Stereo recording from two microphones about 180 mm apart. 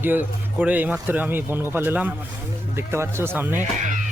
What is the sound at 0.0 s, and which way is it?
Speech, 10° right (ahead or behind).